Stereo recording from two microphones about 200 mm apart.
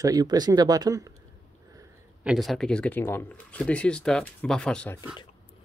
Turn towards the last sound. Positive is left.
turn(degrees=5)  # may be behind; listen again after turning